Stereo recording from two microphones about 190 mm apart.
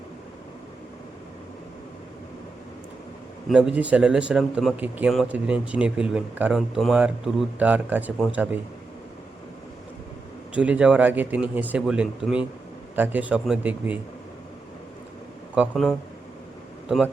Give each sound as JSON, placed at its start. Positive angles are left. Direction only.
{"t": 3.5, "sound": "speech", "side_deg": -5}
{"t": 10.5, "sound": "speech", "side_deg": -5}
{"t": 15.5, "sound": "speech", "side_deg": 0}